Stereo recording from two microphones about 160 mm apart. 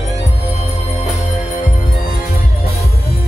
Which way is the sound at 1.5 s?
55° left (ahead or behind).